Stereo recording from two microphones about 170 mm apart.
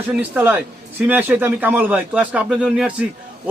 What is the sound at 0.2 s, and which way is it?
A man's voice, 10° right (ahead or behind).